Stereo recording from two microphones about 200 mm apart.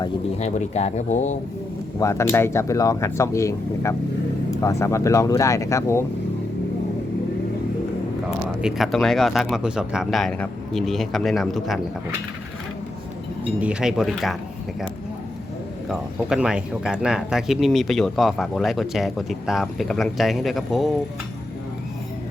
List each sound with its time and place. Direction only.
0.3 s speech: 35° left (ahead or behind)
2.0 s speech: 15° left (ahead or behind)
8.6 s speech: centre (ahead or behind)
13.6 s speech: 5° right (ahead or behind)
15.9 s speech: 5° right (ahead or behind)